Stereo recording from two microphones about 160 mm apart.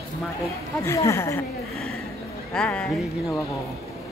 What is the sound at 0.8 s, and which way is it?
Speech, 20° left (ahead or behind).